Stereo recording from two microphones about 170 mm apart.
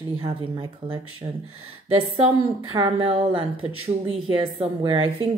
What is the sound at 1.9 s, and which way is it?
A woman's voice, 35° right (ahead or behind).